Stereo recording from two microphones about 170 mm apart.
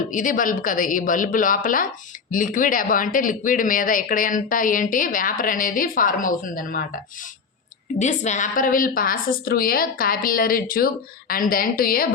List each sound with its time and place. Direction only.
0.1 s speech: 50° left (ahead or behind)
7.9 s a woman's voice: 45° left (ahead or behind)